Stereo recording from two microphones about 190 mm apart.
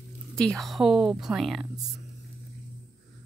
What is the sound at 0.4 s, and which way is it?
Speech, centre (ahead or behind).